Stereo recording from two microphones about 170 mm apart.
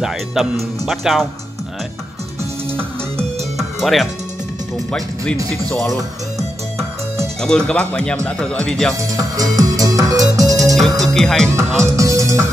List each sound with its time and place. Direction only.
0.0 s speech: centre (ahead or behind)
3.5 s music: centre (ahead or behind)
4.9 s speech: 5° left (ahead or behind)
7.4 s speech: 5° left (ahead or behind)
8.9 s music: 20° right (ahead or behind)
10.7 s speech: centre (ahead or behind)
11.8 s music: 20° right (ahead or behind)